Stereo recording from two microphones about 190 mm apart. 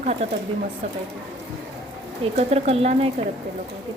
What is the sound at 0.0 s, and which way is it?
Speech, 35° right (ahead or behind).